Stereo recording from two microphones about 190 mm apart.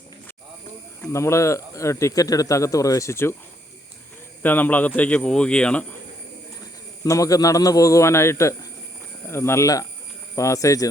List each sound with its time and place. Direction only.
1.0 s speech: 15° left (ahead or behind)
4.4 s speech: 10° left (ahead or behind)
7.0 s speech: 15° left (ahead or behind)